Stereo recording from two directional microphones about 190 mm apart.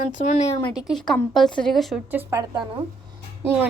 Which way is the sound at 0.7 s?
Centre (ahead or behind).